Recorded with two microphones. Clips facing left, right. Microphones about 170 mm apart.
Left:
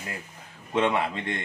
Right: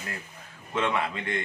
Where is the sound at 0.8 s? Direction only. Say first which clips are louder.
Left 3 dB; 25° left (ahead or behind).